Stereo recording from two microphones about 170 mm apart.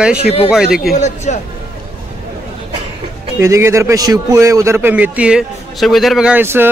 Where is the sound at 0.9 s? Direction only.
45° left (ahead or behind).